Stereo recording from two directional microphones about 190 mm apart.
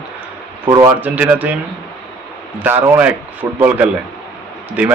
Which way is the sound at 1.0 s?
10° right (ahead or behind).